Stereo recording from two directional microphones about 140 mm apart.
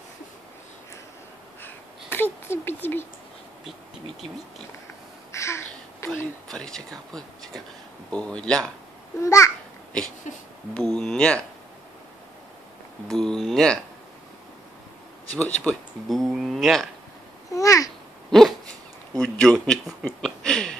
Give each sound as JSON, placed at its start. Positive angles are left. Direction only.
{"t": 1.6, "sound": "a sound", "side_deg": 15}
{"t": 5.3, "sound": "a sound", "side_deg": 20}
{"t": 6.5, "sound": "speech", "side_deg": 5}
{"t": 9.2, "sound": "a child's voice", "side_deg": 20}
{"t": 10.3, "sound": "speech", "side_deg": 60}
{"t": 10.7, "sound": "speech", "side_deg": 5}
{"t": 13.1, "sound": "speech", "side_deg": 5}
{"t": 15.3, "sound": "speech", "side_deg": 10}
{"t": 17.5, "sound": "babbling", "side_deg": 25}
{"t": 19.1, "sound": "speech", "side_deg": 5}
{"t": 20.2, "sound": "a sound", "side_deg": 5}